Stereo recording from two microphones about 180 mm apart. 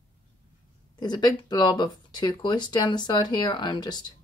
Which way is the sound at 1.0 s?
25° left (ahead or behind).